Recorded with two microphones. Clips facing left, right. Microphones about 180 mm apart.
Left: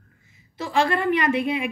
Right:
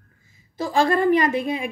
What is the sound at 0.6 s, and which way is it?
A woman's voice, 35° right (ahead or behind).